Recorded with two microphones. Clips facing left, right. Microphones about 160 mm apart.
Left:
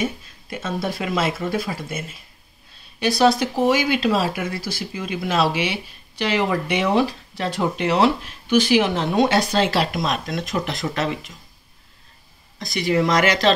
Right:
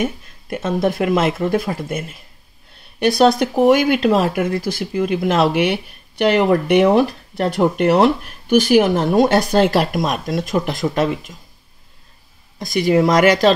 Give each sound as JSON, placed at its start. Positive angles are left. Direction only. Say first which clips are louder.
{"t": 0.0, "sound": "speech", "louder": "right 3 dB", "side_deg": -55}
{"t": 12.6, "sound": "speech", "louder": "right 5 dB", "side_deg": -50}